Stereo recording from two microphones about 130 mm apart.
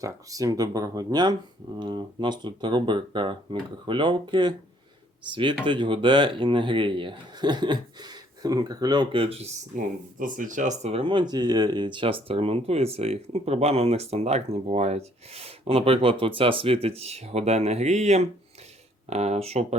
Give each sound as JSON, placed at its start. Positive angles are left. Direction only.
{"t": 0.0, "sound": "speech", "side_deg": -25}
{"t": 9.7, "sound": "speech", "side_deg": -90}
{"t": 11.0, "sound": "speech", "side_deg": -35}